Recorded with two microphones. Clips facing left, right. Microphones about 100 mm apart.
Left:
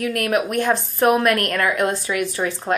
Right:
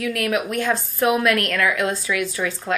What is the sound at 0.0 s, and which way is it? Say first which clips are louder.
A woman's voice: left 2 dB; 40° left (ahead or behind).